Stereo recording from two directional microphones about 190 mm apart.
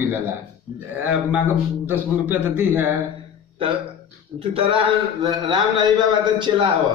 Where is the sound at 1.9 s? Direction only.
10° right (ahead or behind).